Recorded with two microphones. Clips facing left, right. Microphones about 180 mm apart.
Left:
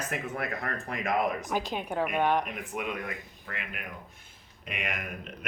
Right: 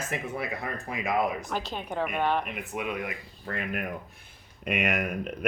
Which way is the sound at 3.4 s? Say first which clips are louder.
Right 9 dB; 40° right (ahead or behind).